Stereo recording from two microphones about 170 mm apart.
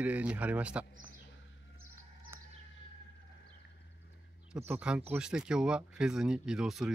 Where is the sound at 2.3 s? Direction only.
15° right (ahead or behind).